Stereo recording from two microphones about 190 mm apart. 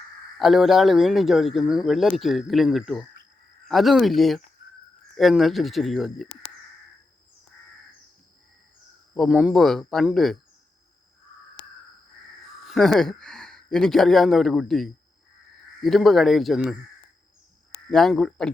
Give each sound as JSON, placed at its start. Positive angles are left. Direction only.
{"t": 0.3, "sound": "speech", "side_deg": 0}
{"t": 4.6, "sound": "a sound", "side_deg": 50}
{"t": 5.1, "sound": "speech", "side_deg": 0}
{"t": 9.1, "sound": "speech", "side_deg": 0}
{"t": 12.6, "sound": "speech", "side_deg": 0}
{"t": 17.9, "sound": "speech", "side_deg": 0}